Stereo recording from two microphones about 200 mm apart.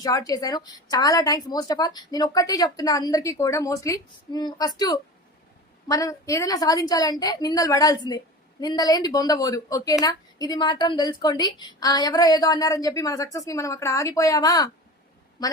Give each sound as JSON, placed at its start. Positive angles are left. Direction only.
{"t": 0.0, "sound": "a woman's voice", "side_deg": 20}